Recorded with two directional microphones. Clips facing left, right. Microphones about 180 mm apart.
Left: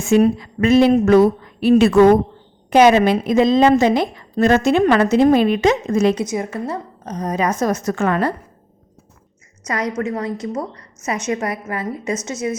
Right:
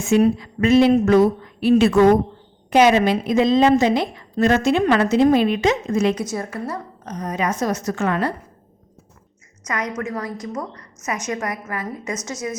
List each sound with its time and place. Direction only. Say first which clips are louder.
0.1 s a woman's voice: left 2 dB; 50° left (ahead or behind)
6.1 s a woman's voice: left 4 dB; 20° left (ahead or behind); by 8.3 s 50° left (ahead or behind)
9.6 s a woman's voice: left 4 dB; 35° left (ahead or behind)